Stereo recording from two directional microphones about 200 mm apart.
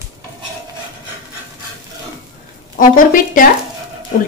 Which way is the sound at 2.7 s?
45° left (ahead or behind).